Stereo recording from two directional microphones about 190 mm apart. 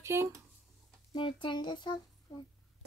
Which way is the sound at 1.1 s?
25° left (ahead or behind).